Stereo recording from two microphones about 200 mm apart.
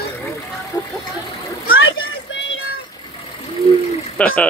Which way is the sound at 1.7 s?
70° left (ahead or behind).